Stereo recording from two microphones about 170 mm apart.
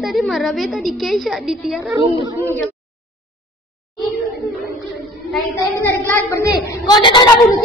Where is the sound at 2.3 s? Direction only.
15° left (ahead or behind).